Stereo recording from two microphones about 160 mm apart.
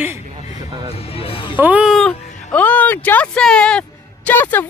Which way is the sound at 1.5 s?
10° right (ahead or behind).